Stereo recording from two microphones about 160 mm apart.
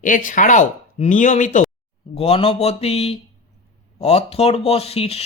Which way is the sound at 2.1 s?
40° left (ahead or behind).